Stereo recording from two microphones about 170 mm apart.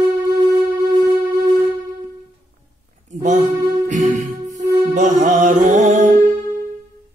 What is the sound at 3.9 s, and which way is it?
Music, 50° right (ahead or behind).